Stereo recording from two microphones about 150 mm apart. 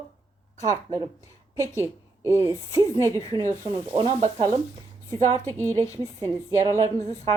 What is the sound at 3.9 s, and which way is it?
Sizzle, 30° right (ahead or behind).